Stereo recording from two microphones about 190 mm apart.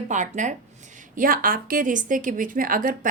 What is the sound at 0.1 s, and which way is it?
A woman's voice, 40° right (ahead or behind).